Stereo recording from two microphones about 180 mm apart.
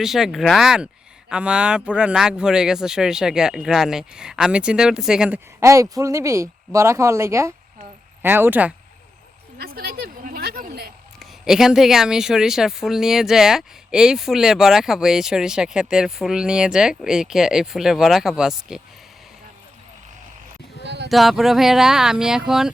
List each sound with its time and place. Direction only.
0.0 s speech: centre (ahead or behind)
5.5 s speech: 15° right (ahead or behind)
9.6 s a sound: 60° right (ahead or behind)
11.2 s speech: centre (ahead or behind)
20.8 s a sound: 70° right (ahead or behind)
21.1 s speech: centre (ahead or behind)